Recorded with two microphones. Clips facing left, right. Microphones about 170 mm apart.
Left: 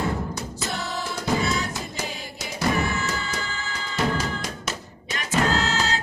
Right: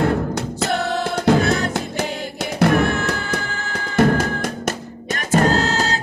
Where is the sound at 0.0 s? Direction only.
70° right (ahead or behind).